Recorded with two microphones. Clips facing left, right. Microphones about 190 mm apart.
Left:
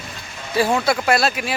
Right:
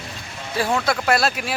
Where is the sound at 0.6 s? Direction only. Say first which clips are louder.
Left 3 dB; 5° left (ahead or behind).